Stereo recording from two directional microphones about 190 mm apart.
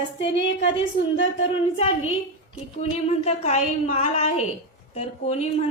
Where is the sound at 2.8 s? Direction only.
35° left (ahead or behind).